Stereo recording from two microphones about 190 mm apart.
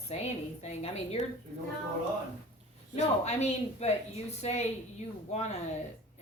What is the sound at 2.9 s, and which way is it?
A woman's voice, 35° left (ahead or behind).